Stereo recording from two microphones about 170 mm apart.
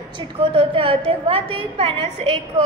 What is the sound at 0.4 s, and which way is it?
A woman's voice, 30° right (ahead or behind).